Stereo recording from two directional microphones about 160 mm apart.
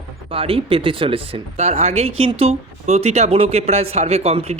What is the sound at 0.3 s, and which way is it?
Speech, 35° right (ahead or behind).